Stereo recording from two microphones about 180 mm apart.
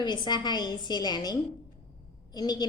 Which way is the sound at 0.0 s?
25° left (ahead or behind).